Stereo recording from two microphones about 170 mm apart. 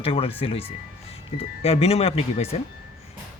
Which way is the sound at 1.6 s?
35° left (ahead or behind).